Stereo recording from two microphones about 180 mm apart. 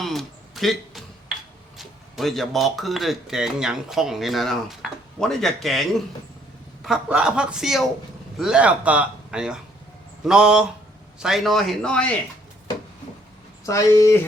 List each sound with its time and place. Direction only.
0.0 s a sound: centre (ahead or behind)
1.8 s speech: centre (ahead or behind)
13.7 s speech: 15° left (ahead or behind)